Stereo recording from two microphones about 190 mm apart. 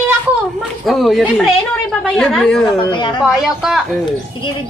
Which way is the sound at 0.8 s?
Centre (ahead or behind).